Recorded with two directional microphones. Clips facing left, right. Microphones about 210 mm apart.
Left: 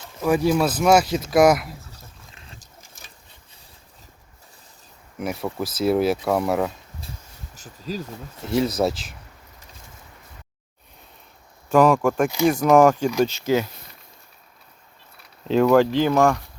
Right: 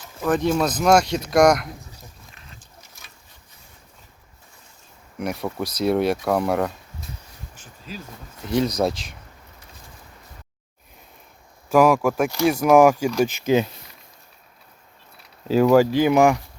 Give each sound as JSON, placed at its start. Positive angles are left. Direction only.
{"t": 0.2, "sound": "speech", "side_deg": 10}
{"t": 2.3, "sound": "boat", "side_deg": 30}
{"t": 5.2, "sound": "speech", "side_deg": 0}
{"t": 7.5, "sound": "a sound", "side_deg": 40}
{"t": 8.4, "sound": "speech", "side_deg": 5}
{"t": 11.7, "sound": "speech", "side_deg": -10}
{"t": 15.4, "sound": "speech", "side_deg": -5}